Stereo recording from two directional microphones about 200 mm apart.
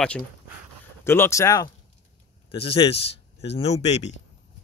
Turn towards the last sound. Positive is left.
turn(degrees=35)  # may be behind; listen again after turning